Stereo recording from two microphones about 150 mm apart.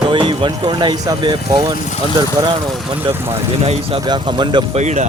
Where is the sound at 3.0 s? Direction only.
15° right (ahead or behind).